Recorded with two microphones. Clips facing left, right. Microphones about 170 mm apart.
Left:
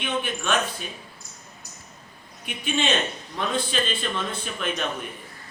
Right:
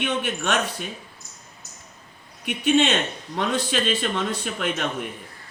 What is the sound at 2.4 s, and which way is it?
A man's voice, 70° right (ahead or behind).